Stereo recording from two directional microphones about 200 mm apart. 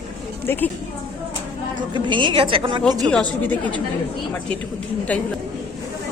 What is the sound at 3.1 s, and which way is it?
Speech, 5° left (ahead or behind).